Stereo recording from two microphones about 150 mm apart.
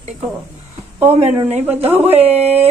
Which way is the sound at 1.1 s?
45° right (ahead or behind).